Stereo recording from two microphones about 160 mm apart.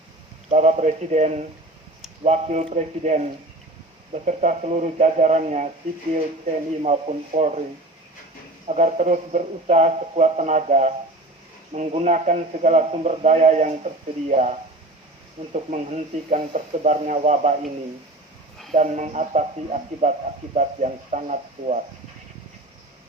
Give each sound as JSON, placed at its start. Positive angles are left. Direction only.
{"t": 0.5, "sound": "a man's voice", "side_deg": -45}
{"t": 8.6, "sound": "a man's voice", "side_deg": -45}
{"t": 15.5, "sound": "a man's voice", "side_deg": -45}
{"t": 18.7, "sound": "a man's voice", "side_deg": -45}